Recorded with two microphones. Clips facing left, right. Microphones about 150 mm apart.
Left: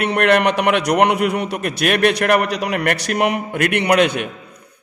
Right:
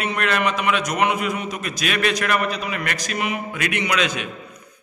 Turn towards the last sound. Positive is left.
turn(degrees=60)  # may be behind; listen again after turning